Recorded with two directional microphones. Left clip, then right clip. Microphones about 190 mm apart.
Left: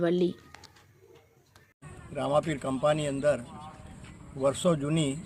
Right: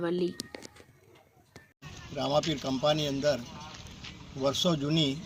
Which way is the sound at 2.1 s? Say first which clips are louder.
Left 1 dB; 5° left (ahead or behind).